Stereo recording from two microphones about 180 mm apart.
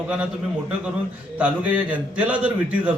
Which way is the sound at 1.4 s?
10° right (ahead or behind).